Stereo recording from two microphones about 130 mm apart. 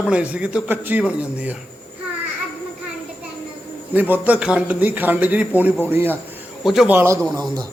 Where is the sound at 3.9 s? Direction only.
15° right (ahead or behind).